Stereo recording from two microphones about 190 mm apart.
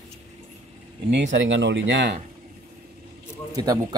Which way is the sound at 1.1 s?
70° right (ahead or behind).